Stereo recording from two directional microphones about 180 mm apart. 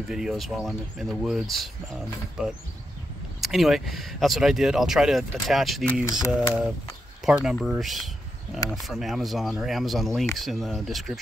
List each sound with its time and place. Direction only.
0.1 s speech: centre (ahead or behind)
6.0 s a sound: 15° left (ahead or behind)
7.3 s speech: 5° right (ahead or behind)